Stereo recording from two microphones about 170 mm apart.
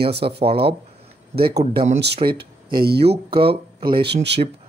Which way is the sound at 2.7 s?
65° right (ahead or behind).